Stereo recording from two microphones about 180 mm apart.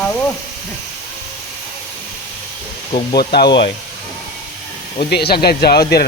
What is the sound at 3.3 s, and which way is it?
Speech, 65° left (ahead or behind).